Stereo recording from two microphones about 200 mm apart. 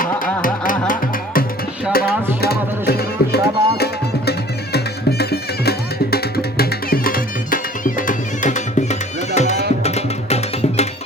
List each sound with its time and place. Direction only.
0.4 s music: 45° left (ahead or behind)